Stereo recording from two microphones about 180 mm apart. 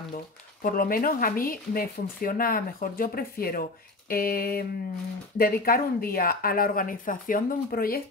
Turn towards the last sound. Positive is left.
turn(degrees=55)  # may be behind; listen again after turning